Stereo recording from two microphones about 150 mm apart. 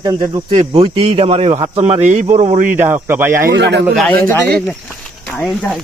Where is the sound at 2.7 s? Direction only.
15° right (ahead or behind).